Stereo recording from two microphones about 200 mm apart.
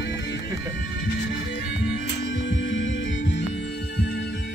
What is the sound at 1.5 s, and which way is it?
Music, 65° left (ahead or behind).